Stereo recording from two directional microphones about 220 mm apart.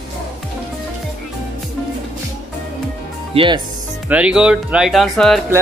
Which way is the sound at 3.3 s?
20° right (ahead or behind).